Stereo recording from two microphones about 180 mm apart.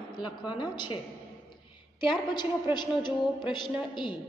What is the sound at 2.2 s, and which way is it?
A man's voice, 25° left (ahead or behind).